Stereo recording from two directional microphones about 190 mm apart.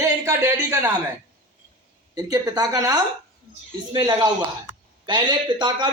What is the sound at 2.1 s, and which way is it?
A man's voice, 20° right (ahead or behind).